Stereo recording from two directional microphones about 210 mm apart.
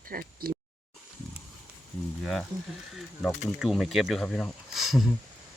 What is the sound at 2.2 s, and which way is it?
Speech, centre (ahead or behind).